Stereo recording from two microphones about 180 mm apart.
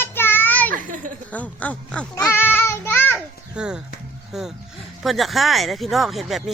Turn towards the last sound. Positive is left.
turn(degrees=0)  # may be behind; listen again after turning